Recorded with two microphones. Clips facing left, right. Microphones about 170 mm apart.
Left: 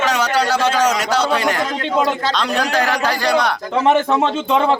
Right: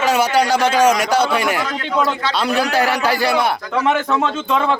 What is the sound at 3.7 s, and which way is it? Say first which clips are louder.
A man's voice: left 4 dB; 25° left (ahead or behind).